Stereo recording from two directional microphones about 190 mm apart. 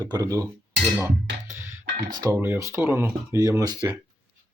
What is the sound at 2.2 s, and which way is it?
Speech, 15° right (ahead or behind).